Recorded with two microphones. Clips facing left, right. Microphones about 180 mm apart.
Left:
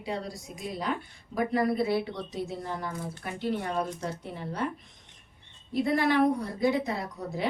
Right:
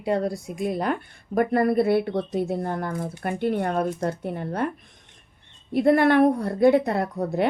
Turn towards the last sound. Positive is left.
turn(degrees=-60)  # may be behind; listen again after turning